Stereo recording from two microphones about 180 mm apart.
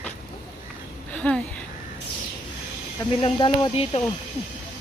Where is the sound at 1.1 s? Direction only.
5° left (ahead or behind).